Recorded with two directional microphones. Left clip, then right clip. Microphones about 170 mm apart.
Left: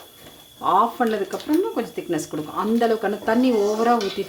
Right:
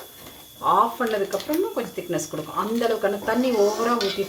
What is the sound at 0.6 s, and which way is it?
Speech, 45° left (ahead or behind).